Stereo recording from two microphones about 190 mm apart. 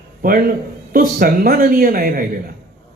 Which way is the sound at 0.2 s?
50° right (ahead or behind).